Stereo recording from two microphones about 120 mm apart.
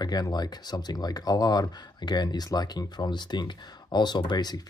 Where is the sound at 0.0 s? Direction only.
35° left (ahead or behind).